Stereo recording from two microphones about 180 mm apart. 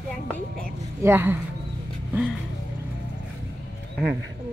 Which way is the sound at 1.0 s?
15° right (ahead or behind).